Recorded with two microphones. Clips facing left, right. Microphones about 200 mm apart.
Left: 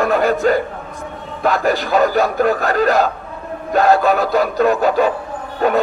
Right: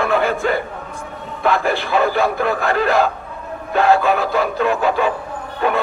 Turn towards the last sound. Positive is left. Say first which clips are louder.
# left 3 dB
turn(degrees=40)  # may be behind; listen again after turning